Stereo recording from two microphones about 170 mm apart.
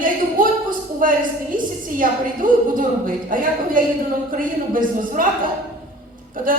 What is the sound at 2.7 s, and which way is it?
Speech, 55° right (ahead or behind).